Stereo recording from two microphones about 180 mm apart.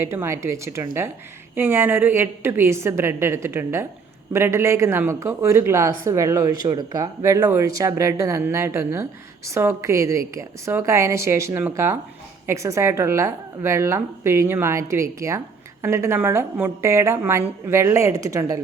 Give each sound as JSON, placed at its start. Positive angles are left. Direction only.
{"t": 0.0, "sound": "speech", "side_deg": -15}